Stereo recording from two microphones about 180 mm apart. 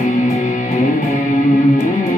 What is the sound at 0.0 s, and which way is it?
Music, 40° left (ahead or behind).